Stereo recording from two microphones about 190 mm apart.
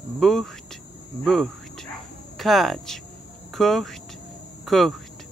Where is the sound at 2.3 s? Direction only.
Centre (ahead or behind).